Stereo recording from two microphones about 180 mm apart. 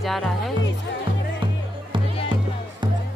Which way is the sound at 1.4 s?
25° right (ahead or behind).